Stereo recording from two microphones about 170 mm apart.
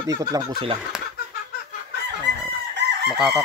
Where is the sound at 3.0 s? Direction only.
Centre (ahead or behind).